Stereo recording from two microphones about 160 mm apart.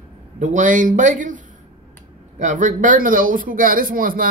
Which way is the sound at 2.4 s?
50° right (ahead or behind).